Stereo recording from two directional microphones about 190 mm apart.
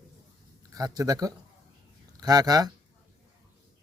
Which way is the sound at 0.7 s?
20° right (ahead or behind).